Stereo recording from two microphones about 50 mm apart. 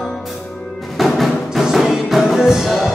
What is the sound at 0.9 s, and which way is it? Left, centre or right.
Music, centre.